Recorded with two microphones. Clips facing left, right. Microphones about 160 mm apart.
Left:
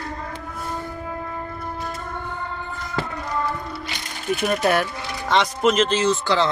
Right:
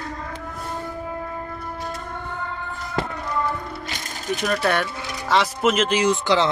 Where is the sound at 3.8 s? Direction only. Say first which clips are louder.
Left 2 dB; 40° right (ahead or behind).